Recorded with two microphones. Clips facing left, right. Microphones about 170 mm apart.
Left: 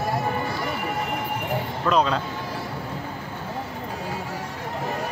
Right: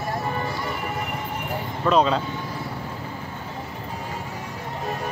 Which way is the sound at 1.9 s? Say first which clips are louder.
Right 2 dB; centre (ahead or behind).